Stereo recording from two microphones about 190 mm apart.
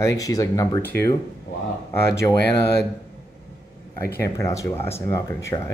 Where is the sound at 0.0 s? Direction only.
15° left (ahead or behind).